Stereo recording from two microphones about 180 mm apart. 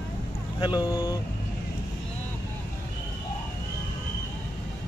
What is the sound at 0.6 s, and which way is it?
Speech, 25° left (ahead or behind).